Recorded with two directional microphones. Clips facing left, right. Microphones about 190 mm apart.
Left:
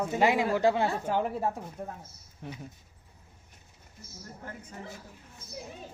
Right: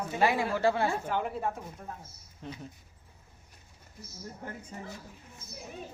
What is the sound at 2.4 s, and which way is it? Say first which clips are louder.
Speech: even; 15° left (ahead or behind).